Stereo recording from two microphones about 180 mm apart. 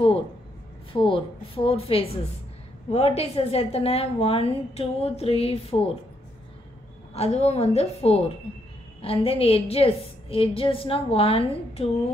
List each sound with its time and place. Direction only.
0.9 s a woman's voice: 30° left (ahead or behind)
7.2 s a woman's voice: 35° left (ahead or behind)